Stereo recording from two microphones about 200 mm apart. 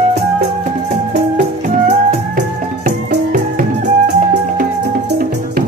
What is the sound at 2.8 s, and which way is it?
Music, 40° right (ahead or behind).